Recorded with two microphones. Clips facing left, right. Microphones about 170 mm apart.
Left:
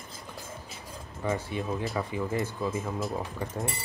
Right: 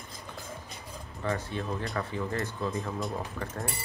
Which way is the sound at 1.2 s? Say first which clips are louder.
Left 2 dB; 15° left (ahead or behind).